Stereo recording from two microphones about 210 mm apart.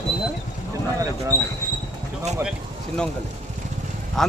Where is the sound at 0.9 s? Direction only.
15° right (ahead or behind).